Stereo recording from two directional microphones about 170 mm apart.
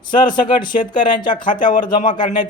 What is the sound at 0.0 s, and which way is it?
Speech, 25° left (ahead or behind).